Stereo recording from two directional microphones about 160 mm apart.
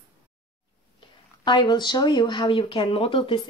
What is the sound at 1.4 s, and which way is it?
Speech, 30° left (ahead or behind).